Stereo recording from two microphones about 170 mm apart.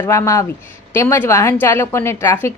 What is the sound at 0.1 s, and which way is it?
A woman's voice, 15° left (ahead or behind).